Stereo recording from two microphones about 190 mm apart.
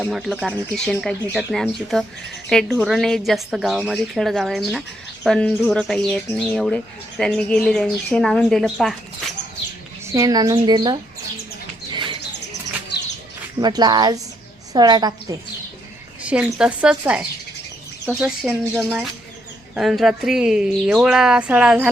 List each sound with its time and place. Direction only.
0.0 s speech: centre (ahead or behind)
10.1 s speech: 15° right (ahead or behind)
11.9 s bird: 25° right (ahead or behind)
13.6 s speech: 20° right (ahead or behind)
16.2 s speech: 5° right (ahead or behind)
19.7 s speech: centre (ahead or behind)